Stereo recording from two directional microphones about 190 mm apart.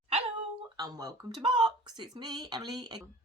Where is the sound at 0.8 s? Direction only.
20° right (ahead or behind).